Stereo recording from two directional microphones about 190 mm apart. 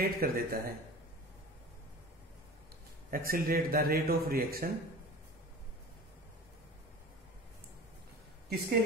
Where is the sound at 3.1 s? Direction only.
50° right (ahead or behind).